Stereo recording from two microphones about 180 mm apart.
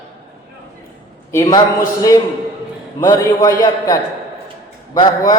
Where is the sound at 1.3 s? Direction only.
15° left (ahead or behind).